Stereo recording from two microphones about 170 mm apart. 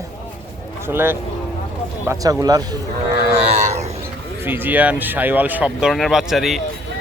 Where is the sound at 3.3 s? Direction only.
40° right (ahead or behind).